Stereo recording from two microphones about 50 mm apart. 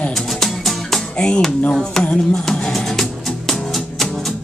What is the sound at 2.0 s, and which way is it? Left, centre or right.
Music, centre.